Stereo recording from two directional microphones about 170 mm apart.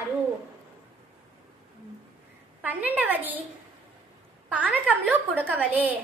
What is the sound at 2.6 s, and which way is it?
Speech, 10° right (ahead or behind).